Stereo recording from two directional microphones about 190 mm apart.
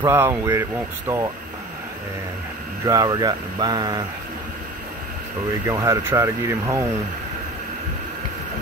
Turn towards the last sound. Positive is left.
turn(degrees=-10)  # may be behind; listen again after turning